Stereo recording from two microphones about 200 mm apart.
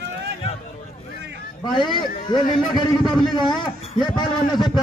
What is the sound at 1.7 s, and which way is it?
A man's voice, 25° left (ahead or behind).